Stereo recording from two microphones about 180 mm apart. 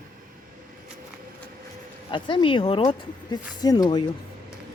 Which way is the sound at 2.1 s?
25° left (ahead or behind).